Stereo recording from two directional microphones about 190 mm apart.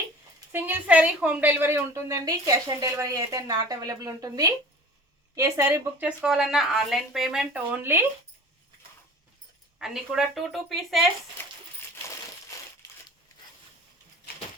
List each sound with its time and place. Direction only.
0.5 s a woman's voice: 10° right (ahead or behind)
9.7 s a woman's voice: 5° right (ahead or behind)